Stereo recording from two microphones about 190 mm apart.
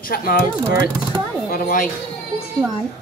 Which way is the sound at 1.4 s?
50° left (ahead or behind).